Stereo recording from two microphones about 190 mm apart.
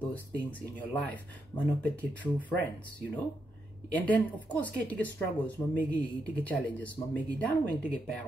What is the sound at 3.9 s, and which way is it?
Speech, 10° left (ahead or behind).